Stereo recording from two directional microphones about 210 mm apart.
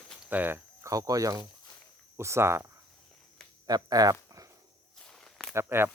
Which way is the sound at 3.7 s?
20° right (ahead or behind).